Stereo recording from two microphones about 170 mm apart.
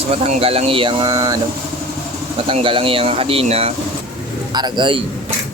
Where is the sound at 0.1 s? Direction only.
40° right (ahead or behind); by 1.4 s 20° right (ahead or behind).